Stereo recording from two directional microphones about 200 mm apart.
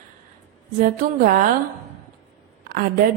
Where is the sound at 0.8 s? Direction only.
45° right (ahead or behind).